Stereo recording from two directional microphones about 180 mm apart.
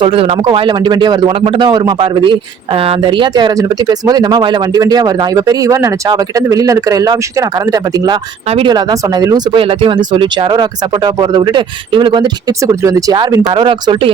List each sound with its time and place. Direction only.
0.0 s speech: 30° right (ahead or behind)